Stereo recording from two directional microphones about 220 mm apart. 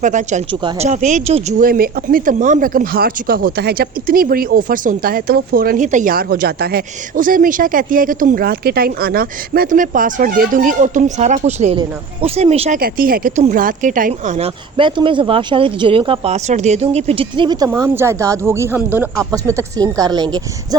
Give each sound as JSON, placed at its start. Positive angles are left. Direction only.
{"t": 0.0, "sound": "speech", "side_deg": -35}
{"t": 12.8, "sound": "speech", "side_deg": -40}